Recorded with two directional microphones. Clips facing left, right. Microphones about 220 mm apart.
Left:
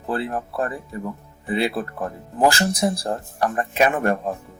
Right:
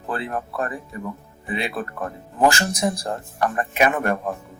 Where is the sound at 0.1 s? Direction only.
30° left (ahead or behind).